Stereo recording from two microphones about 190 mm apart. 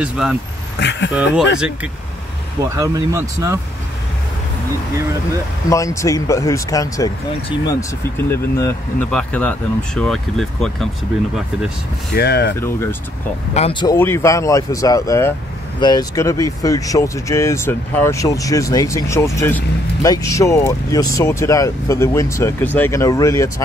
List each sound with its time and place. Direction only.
0.0 s speech: 5° right (ahead or behind)
0.7 s speech: 70° left (ahead or behind)
1.1 s speech: 5° right (ahead or behind)
2.7 s speech: 15° right (ahead or behind)
5.7 s speech: 15° left (ahead or behind)
12.1 s speech: 60° left (ahead or behind)
12.5 s speech: 15° left (ahead or behind)
13.6 s speech: 25° left (ahead or behind)
13.9 s speech: 10° left (ahead or behind)